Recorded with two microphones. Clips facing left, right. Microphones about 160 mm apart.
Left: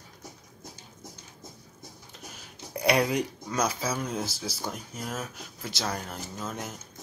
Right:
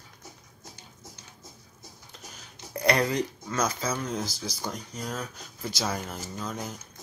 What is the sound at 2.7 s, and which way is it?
Speech, 10° left (ahead or behind).